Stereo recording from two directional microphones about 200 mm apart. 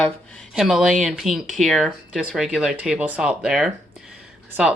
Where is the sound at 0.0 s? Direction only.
5° left (ahead or behind).